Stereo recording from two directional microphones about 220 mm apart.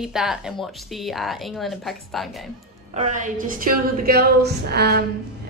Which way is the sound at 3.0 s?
35° right (ahead or behind).